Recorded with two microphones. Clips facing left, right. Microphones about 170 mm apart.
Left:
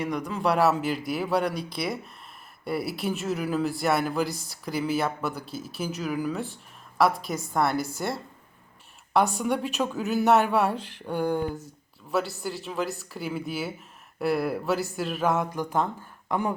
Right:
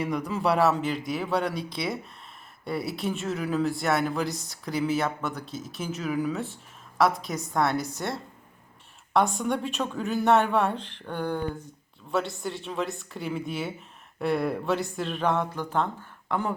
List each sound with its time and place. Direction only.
0.0 s speech: 5° right (ahead or behind)
5.4 s speech: 30° left (ahead or behind)
5.7 s speech: centre (ahead or behind)
9.4 s speech: 5° left (ahead or behind)